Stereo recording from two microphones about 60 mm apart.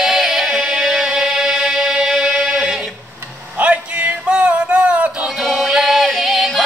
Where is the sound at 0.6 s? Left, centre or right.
Centre.